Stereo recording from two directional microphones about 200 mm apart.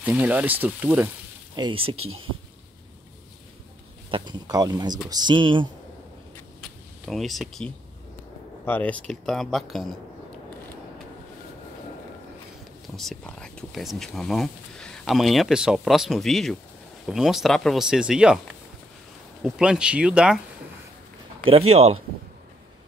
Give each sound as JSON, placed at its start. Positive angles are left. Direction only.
{"t": 0.0, "sound": "speech", "side_deg": -5}
{"t": 1.6, "sound": "speech", "side_deg": -25}
{"t": 4.1, "sound": "speech", "side_deg": -20}
{"t": 7.1, "sound": "speech", "side_deg": 0}
{"t": 12.9, "sound": "speech", "side_deg": 0}
{"t": 19.4, "sound": "speech", "side_deg": -5}
{"t": 21.5, "sound": "speech", "side_deg": -30}